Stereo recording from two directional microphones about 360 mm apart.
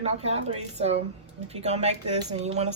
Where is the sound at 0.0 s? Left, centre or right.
Centre.